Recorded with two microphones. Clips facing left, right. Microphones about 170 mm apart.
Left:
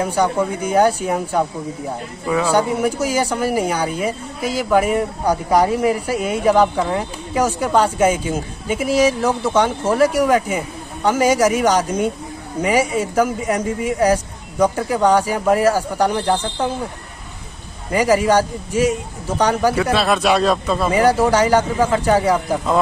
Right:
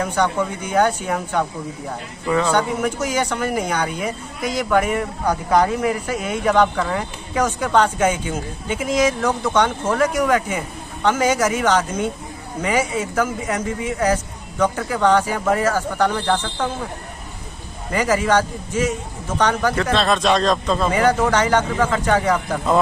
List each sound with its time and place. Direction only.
0.0 s speech: 10° left (ahead or behind)
17.9 s speech: 10° left (ahead or behind)